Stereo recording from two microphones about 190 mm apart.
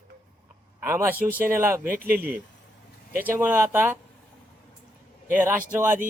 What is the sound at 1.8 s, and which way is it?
Speech, 50° right (ahead or behind).